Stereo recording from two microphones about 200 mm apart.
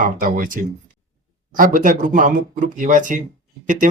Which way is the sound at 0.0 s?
45° right (ahead or behind).